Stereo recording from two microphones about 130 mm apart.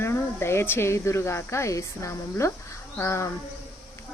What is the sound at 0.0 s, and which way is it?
Speech, 20° left (ahead or behind).